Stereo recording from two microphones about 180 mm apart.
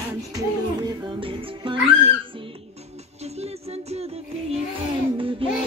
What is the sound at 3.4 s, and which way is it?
Music, 35° right (ahead or behind).